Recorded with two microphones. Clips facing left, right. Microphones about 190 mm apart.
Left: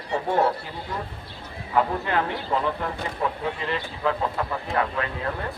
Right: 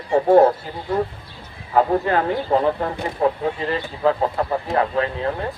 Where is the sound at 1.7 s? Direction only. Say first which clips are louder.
Right 6 dB; 40° right (ahead or behind).